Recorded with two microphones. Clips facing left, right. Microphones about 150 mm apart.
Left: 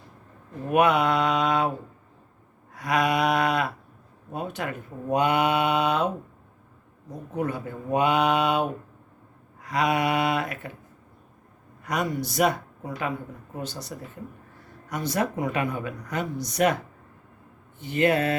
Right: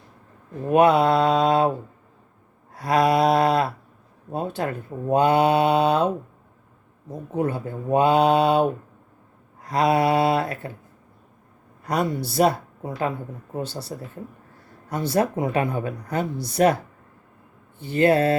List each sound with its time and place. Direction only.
0.7 s speech: 30° right (ahead or behind)
2.7 s speech: 35° right (ahead or behind)
7.3 s speech: 30° right (ahead or behind)
11.8 s speech: 35° right (ahead or behind)